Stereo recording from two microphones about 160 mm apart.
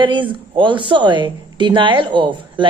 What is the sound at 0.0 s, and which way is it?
Speech, 30° right (ahead or behind).